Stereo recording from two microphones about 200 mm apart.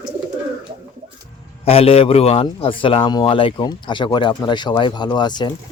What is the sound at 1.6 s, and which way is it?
Speech, 30° left (ahead or behind).